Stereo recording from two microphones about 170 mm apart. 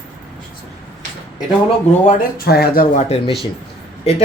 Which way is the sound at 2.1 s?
65° left (ahead or behind).